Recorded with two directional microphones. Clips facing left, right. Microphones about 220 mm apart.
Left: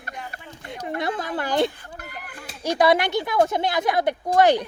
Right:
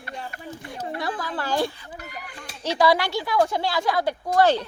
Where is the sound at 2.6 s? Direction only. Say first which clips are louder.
Left 2 dB; 15° left (ahead or behind).